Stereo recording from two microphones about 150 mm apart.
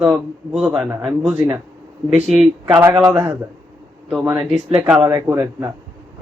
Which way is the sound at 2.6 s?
15° right (ahead or behind).